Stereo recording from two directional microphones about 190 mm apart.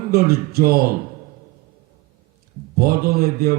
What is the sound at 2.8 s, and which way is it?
Speech, 55° right (ahead or behind).